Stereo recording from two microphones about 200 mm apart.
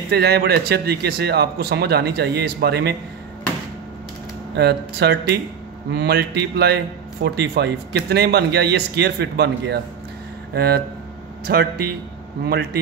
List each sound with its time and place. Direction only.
0.1 s speech: 55° right (ahead or behind)
4.6 s a man's voice: 55° right (ahead or behind)